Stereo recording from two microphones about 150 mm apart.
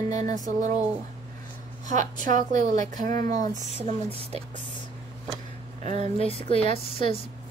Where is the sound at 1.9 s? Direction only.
55° right (ahead or behind).